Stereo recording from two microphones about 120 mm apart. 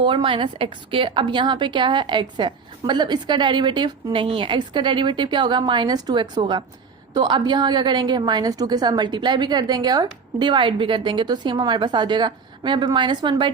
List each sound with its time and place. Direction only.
0.0 s a woman's voice: 45° right (ahead or behind)